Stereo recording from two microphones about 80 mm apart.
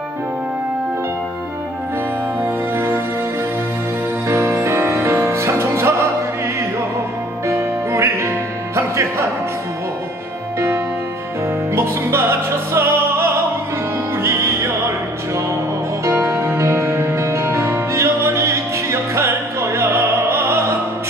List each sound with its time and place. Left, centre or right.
2.4 s music: right
4.3 s music: right
11.7 s music: right
16.0 s music: right